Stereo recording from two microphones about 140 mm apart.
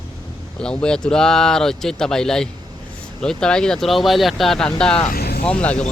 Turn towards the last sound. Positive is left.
turn(degrees=10)  # may be behind; listen again after turning